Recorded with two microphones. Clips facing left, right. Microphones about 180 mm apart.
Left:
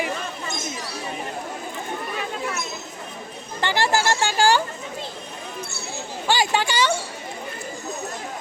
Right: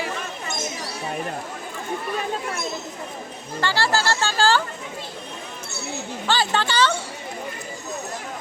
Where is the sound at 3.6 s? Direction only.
15° left (ahead or behind).